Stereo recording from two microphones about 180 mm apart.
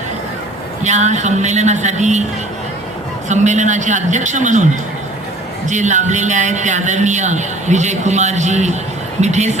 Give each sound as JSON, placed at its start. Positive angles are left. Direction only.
{"t": 0.8, "sound": "a man's voice", "side_deg": -40}
{"t": 3.2, "sound": "a man's voice", "side_deg": -40}